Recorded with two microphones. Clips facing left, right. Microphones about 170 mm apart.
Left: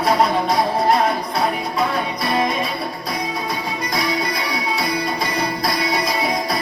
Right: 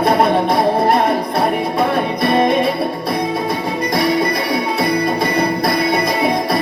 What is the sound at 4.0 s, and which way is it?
Music, 55° right (ahead or behind).